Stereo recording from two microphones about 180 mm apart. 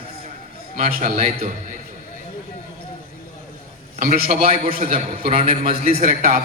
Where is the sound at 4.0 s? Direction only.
40° right (ahead or behind).